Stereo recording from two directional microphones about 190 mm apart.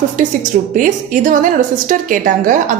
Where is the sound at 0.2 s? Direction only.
45° right (ahead or behind).